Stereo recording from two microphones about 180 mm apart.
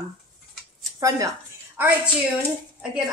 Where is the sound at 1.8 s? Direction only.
10° right (ahead or behind).